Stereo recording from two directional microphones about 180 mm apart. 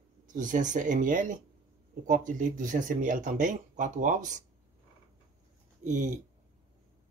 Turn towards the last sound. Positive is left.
turn(degrees=-45)  # may be behind; listen again after turning